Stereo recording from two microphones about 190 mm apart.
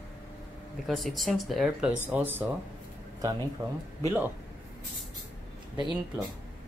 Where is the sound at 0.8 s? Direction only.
Centre (ahead or behind).